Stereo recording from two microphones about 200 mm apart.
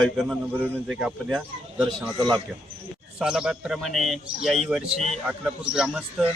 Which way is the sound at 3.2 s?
5° right (ahead or behind).